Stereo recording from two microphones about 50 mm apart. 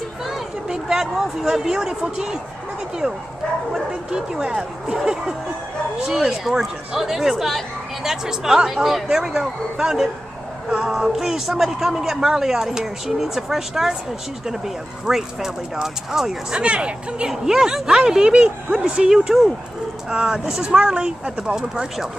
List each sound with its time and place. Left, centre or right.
0.7 s a man's voice: centre
3.7 s a man's voice: centre
15.0 s a man's voice: centre
16.6 s a woman's voice: right
17.3 s a man's voice: centre